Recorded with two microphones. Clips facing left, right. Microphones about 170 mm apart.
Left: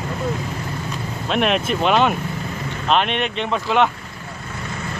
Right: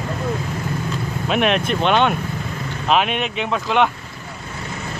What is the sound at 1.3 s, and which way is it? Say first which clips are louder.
Speech: right 1 dB; centre (ahead or behind).